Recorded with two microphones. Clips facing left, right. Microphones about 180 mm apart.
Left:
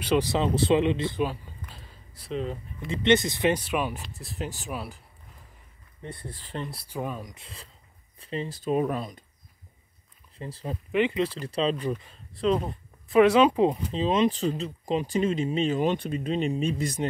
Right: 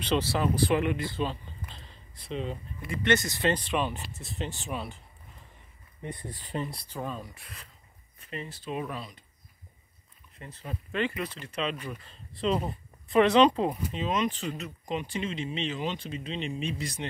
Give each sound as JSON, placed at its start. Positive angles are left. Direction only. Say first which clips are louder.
{"t": 0.0, "sound": "speech", "louder": "left 3 dB", "side_deg": 15}
{"t": 1.2, "sound": "a sound", "louder": "left 3 dB", "side_deg": 10}
{"t": 2.9, "sound": "speech", "louder": "left 5 dB", "side_deg": 25}
{"t": 6.0, "sound": "speech", "louder": "right 1 dB", "side_deg": -15}
{"t": 6.7, "sound": "speech", "louder": "left 3 dB", "side_deg": 10}
{"t": 8.2, "sound": "speech", "louder": "left 7 dB", "side_deg": 30}
{"t": 8.5, "sound": "speech", "louder": "left 10 dB", "side_deg": 45}
{"t": 10.3, "sound": "speech", "louder": "left 6 dB", "side_deg": 35}
{"t": 10.9, "sound": "speech", "louder": "left 6 dB", "side_deg": 20}
{"t": 11.2, "sound": "speech", "louder": "left 6 dB", "side_deg": 35}
{"t": 12.4, "sound": "speech", "louder": "left 3 dB", "side_deg": -5}
{"t": 13.2, "sound": "speech", "louder": "left 3 dB", "side_deg": 5}
{"t": 13.9, "sound": "speech", "louder": "left 6 dB", "side_deg": 30}